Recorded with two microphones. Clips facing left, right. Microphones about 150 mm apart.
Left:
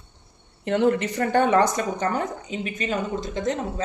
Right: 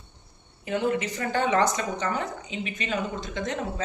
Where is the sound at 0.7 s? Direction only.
65° left (ahead or behind).